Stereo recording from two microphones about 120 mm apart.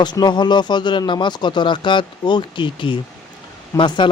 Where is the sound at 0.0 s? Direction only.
35° left (ahead or behind).